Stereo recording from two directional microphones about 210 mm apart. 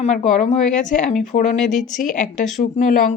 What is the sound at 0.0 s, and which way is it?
A woman's voice, 30° left (ahead or behind).